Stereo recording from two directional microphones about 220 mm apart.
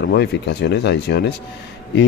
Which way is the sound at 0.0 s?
50° left (ahead or behind).